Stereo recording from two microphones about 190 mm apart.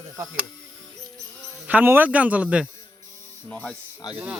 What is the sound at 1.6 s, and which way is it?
Speech, 10° right (ahead or behind).